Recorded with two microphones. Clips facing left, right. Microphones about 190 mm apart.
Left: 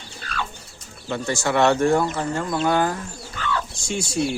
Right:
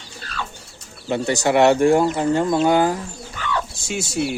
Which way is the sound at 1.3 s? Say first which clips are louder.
Right 4 dB; 20° right (ahead or behind).